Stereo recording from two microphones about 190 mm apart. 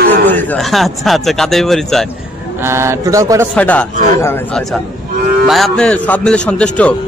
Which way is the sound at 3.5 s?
10° left (ahead or behind).